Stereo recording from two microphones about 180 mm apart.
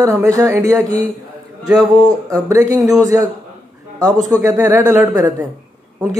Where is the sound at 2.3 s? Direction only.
15° right (ahead or behind).